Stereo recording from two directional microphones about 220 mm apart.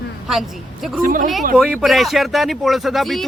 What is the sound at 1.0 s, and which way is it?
Speech, 40° right (ahead or behind).